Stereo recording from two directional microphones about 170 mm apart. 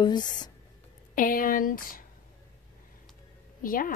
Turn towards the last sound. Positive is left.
turn(degrees=55)  # may be behind; listen again after turning